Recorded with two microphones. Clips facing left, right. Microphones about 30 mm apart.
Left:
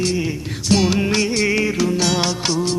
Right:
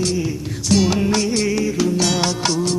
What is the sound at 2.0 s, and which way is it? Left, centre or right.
Music, centre.